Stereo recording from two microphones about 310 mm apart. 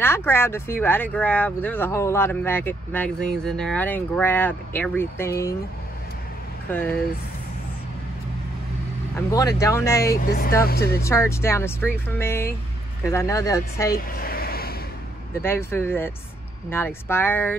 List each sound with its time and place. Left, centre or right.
0.0 s speech: centre
6.7 s speech: centre
9.3 s speech: centre
10.0 s speech: left
11.0 s speech: centre
13.9 s a sound: left
15.4 s speech: centre